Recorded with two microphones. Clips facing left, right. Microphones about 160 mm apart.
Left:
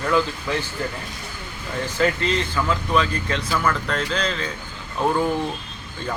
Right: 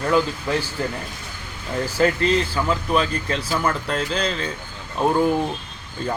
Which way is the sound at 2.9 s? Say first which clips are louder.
Even; 35° right (ahead or behind).